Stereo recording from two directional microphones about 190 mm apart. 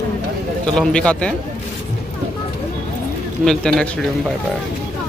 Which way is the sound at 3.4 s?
5° left (ahead or behind).